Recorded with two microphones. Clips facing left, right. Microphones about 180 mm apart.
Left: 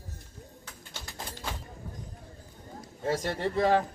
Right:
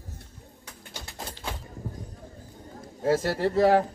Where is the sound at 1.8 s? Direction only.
40° right (ahead or behind).